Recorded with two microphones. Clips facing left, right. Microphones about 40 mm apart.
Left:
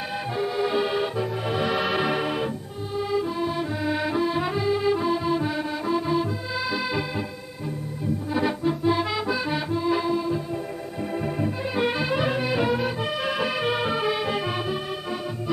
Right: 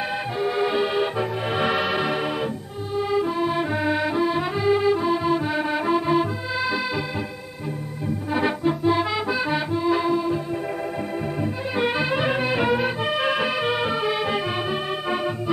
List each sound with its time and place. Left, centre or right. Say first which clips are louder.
0.5 s music: right 2 dB; right
1.1 s music: right 2 dB; right
1.8 s tick-tock: right 1 dB; centre
3.0 s music: right 3 dB; centre
3.9 s music: even; centre
4.8 s organ: right 2 dB; centre
5.6 s music: right 4 dB; right; by 7.0 s centre
8.3 s music: right 3 dB; right
8.8 s accordion: right 1 dB; centre
11.4 s music: right 1 dB; centre
13.6 s music: right 1 dB; centre